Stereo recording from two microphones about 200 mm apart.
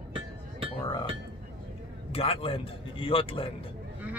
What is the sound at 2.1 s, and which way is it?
Speech, 30° left (ahead or behind).